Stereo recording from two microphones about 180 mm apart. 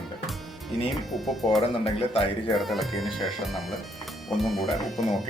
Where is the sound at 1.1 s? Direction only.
Centre (ahead or behind).